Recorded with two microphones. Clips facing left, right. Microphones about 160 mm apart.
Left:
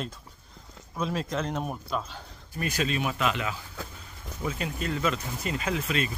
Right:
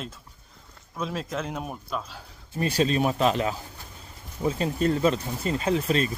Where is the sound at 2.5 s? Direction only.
30° right (ahead or behind).